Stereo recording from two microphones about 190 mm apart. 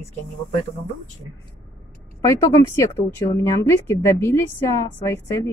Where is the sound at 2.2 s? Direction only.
15° left (ahead or behind).